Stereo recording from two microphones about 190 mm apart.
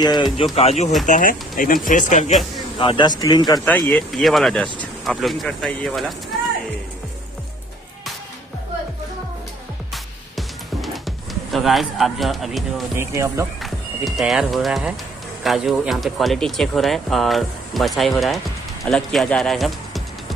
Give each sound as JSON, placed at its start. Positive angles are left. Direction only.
{"t": 0.6, "sound": "speech", "side_deg": 35}
{"t": 2.8, "sound": "speech", "side_deg": 25}
{"t": 3.6, "sound": "speech", "side_deg": 10}
{"t": 10.3, "sound": "music", "side_deg": 0}
{"t": 12.9, "sound": "speech", "side_deg": -15}
{"t": 13.6, "sound": "speech", "side_deg": 0}